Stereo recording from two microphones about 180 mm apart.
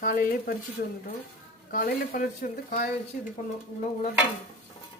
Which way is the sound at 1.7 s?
50° left (ahead or behind).